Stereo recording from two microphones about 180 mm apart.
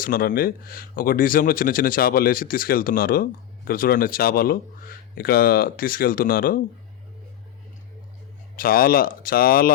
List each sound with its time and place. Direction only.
0.0 s speech: 50° left (ahead or behind)
8.5 s speech: 55° left (ahead or behind)